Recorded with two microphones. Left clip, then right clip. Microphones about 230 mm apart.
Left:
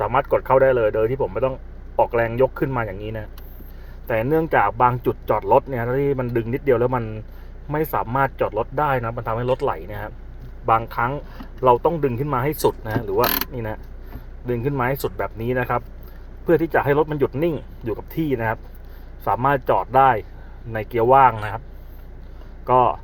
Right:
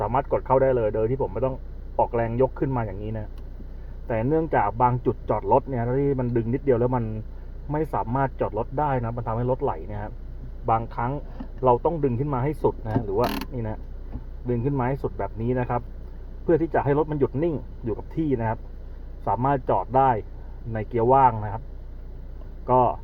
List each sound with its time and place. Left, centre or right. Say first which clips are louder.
0.0 s speech: left 5 dB; left
4.0 s speech: left 4 dB; left
22.6 s speech: left 3 dB; left